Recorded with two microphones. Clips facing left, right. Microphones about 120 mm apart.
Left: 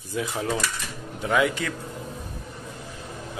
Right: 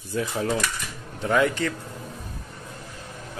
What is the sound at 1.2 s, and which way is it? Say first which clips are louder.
Speech: right 1 dB; 10° left (ahead or behind).